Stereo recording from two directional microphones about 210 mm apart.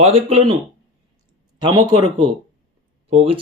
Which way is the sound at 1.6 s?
20° right (ahead or behind).